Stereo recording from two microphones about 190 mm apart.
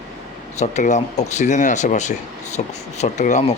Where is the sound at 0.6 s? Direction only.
35° left (ahead or behind).